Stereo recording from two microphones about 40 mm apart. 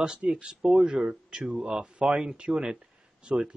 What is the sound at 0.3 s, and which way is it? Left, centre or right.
Speech, right.